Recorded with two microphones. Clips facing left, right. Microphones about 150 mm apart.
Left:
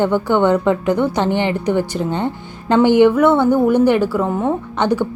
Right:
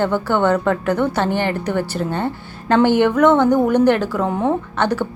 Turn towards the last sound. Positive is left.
turn(degrees=15)  # may be behind; listen again after turning